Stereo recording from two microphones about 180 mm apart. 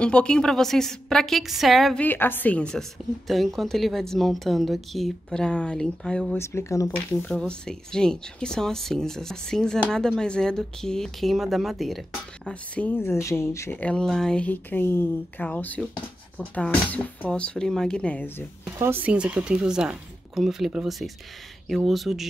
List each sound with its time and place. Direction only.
0.0 s speech: 5° left (ahead or behind)
2.0 s speech: 10° left (ahead or behind)
6.4 s speech: 15° left (ahead or behind)
7.2 s speech: 5° left (ahead or behind)
18.8 s speech: 10° right (ahead or behind)